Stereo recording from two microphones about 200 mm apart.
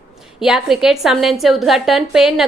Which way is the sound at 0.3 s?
Centre (ahead or behind).